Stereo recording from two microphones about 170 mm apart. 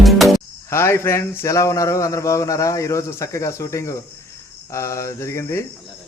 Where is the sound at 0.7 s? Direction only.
15° left (ahead or behind).